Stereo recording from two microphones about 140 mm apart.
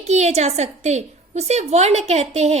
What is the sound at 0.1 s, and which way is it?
A woman's voice, 55° right (ahead or behind).